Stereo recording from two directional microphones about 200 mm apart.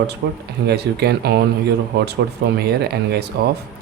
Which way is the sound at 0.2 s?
55° right (ahead or behind).